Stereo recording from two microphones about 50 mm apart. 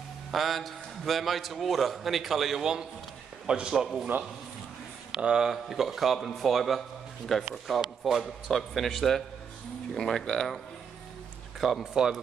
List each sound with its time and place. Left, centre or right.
0.3 s a man's voice: centre
5.2 s a man's voice: centre
5.5 s a man's voice: centre
11.8 s a man's voice: centre